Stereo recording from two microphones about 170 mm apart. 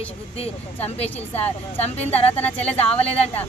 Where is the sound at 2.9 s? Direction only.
35° left (ahead or behind).